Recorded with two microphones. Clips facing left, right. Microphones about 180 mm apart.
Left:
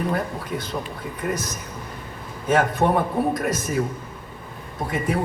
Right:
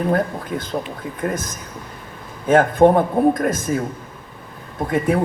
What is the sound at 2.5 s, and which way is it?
A man's voice, 50° right (ahead or behind).